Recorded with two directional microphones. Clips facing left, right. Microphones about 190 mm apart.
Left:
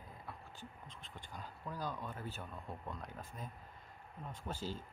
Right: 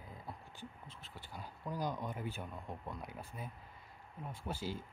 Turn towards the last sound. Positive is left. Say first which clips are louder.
# right 2 dB
turn(degrees=-10)  # may be behind; listen again after turning